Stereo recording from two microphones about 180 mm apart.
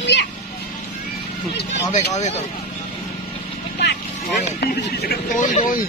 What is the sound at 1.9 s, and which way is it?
Speech, 40° left (ahead or behind).